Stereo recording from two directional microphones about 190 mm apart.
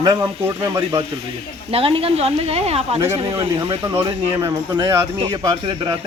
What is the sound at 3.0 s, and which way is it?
Speech, 15° right (ahead or behind).